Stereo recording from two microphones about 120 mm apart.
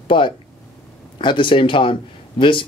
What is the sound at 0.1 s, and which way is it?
A man's voice, 45° left (ahead or behind).